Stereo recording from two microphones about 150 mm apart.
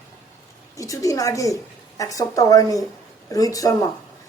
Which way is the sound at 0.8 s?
20° left (ahead or behind).